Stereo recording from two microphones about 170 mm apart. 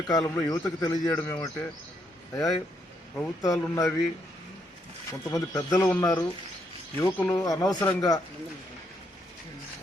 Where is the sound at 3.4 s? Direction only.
20° left (ahead or behind).